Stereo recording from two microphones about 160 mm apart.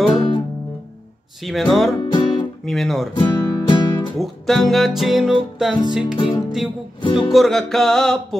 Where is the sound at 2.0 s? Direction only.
30° left (ahead or behind).